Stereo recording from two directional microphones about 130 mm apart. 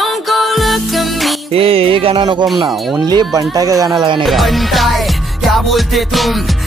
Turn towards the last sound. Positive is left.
turn(degrees=0)  # may be behind; listen again after turning